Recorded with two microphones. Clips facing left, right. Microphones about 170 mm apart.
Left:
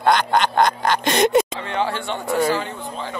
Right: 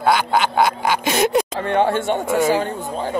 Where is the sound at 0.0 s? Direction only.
5° right (ahead or behind).